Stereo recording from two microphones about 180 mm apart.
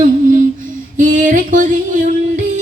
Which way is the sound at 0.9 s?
45° right (ahead or behind).